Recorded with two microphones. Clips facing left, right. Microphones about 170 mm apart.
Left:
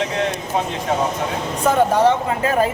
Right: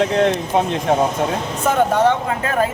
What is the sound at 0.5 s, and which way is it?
Speech, 60° right (ahead or behind).